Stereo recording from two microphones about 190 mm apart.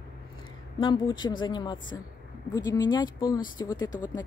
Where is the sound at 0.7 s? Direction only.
25° left (ahead or behind).